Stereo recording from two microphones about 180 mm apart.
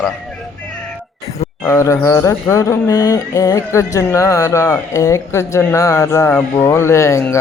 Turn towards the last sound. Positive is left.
turn(degrees=15)  # may be behind; listen again after turning